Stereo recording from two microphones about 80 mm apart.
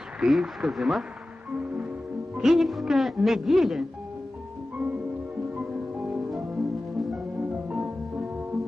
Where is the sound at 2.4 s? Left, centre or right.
Centre.